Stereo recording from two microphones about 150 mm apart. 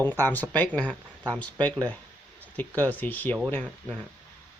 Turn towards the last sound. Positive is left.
turn(degrees=10)  # may be behind; listen again after turning